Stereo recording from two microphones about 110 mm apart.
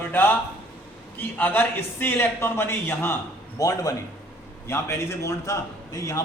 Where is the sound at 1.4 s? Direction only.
15° left (ahead or behind).